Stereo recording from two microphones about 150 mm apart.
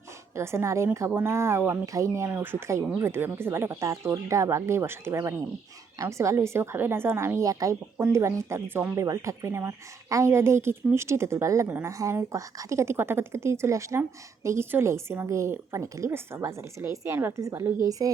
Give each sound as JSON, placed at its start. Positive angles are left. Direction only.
{"t": 0.3, "sound": "a woman's voice", "side_deg": -20}